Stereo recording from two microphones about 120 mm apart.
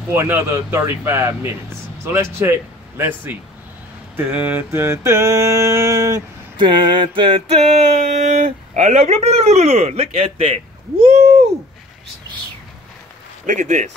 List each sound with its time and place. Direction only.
0.1 s speech: 20° right (ahead or behind)
6.5 s a sound: 40° right (ahead or behind)
8.2 s speech: 80° right; by 11.4 s 55° right (ahead or behind)
13.5 s speech: 85° right